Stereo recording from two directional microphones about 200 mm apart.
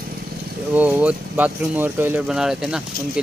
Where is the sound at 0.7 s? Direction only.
10° right (ahead or behind).